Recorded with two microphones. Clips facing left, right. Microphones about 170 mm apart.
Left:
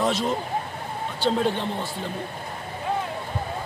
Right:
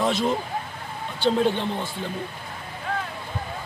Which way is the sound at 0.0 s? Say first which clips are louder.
Right 1 dB; centre (ahead or behind).